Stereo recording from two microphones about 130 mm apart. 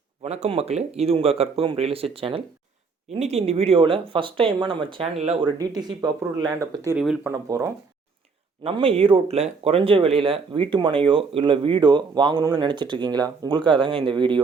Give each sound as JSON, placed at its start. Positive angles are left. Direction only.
{"t": 0.2, "sound": "speech", "side_deg": -55}
{"t": 3.2, "sound": "speech", "side_deg": -55}
{"t": 6.9, "sound": "speech", "side_deg": -5}
{"t": 7.3, "sound": "speech", "side_deg": -25}
{"t": 8.7, "sound": "speech", "side_deg": -45}